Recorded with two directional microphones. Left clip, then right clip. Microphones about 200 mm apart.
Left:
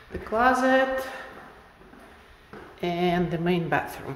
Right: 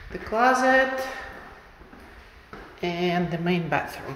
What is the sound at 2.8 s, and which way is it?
A woman's voice, 15° left (ahead or behind).